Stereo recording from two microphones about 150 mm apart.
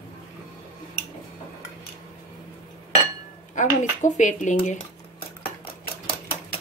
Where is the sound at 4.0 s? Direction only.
55° left (ahead or behind).